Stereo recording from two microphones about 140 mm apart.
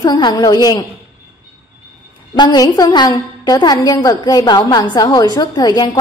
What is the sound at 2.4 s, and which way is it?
A woman's voice, 30° left (ahead or behind).